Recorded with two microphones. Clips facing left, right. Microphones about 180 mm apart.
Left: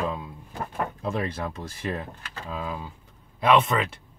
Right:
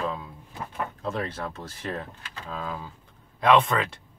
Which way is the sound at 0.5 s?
45° left (ahead or behind).